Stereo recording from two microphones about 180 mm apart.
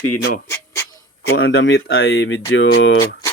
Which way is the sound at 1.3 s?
80° left.